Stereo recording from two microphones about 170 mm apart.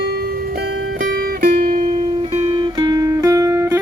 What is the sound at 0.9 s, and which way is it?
Music, 55° right (ahead or behind).